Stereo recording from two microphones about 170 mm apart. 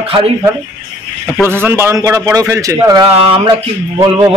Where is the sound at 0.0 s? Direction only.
35° right (ahead or behind).